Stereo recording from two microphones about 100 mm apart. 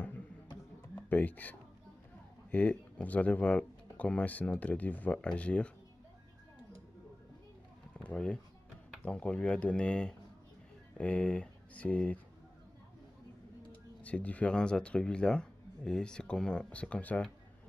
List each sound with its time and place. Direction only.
0.9 s speech: 20° left (ahead or behind)
8.0 s speech: 10° left (ahead or behind)
14.0 s speech: 15° left (ahead or behind)